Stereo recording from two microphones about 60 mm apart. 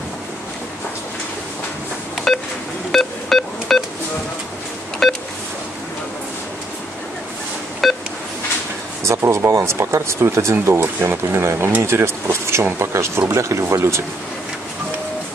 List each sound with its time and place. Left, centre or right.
2.3 s pulse: centre
2.9 s telephone dialing: centre
5.0 s beep: centre
7.8 s telephone dialing: centre
9.0 s a sound: right
9.5 s speech: right